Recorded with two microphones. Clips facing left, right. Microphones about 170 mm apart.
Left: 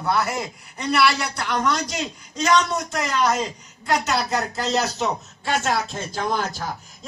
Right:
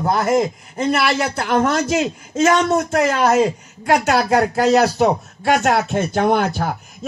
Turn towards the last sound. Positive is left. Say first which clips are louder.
# right 8 dB
turn(degrees=-60)  # may be behind; listen again after turning